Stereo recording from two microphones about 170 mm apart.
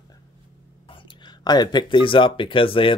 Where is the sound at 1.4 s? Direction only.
25° left (ahead or behind).